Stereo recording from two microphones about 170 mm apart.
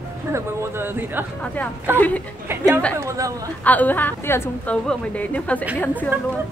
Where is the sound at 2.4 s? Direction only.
15° right (ahead or behind).